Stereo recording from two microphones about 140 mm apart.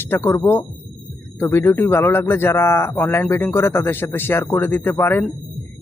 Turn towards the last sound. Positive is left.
turn(degrees=15)  # may be behind; listen again after turning